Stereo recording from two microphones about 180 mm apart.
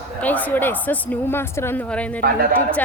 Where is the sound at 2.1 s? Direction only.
55° right (ahead or behind).